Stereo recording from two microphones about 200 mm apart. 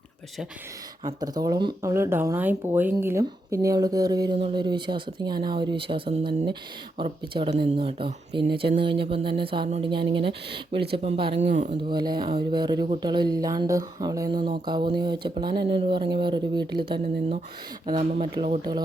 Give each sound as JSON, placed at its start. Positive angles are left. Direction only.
{"t": 1.0, "sound": "speech", "side_deg": -20}
{"t": 11.8, "sound": "speech", "side_deg": -20}